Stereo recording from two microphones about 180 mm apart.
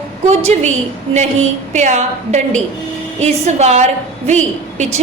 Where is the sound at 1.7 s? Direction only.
40° right (ahead or behind).